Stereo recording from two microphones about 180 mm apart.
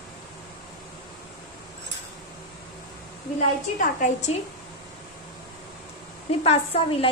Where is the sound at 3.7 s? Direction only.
40° left (ahead or behind).